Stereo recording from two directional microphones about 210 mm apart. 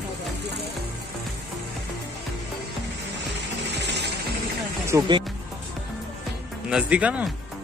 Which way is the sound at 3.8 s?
55° right (ahead or behind).